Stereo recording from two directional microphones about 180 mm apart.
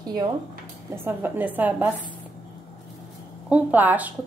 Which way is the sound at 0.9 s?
10° right (ahead or behind).